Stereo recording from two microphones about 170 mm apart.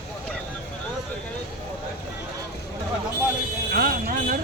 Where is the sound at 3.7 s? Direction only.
60° right (ahead or behind).